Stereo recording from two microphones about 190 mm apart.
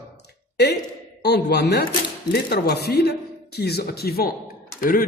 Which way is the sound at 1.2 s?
60° left (ahead or behind).